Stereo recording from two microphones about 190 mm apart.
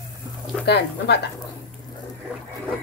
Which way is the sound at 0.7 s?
60° left (ahead or behind).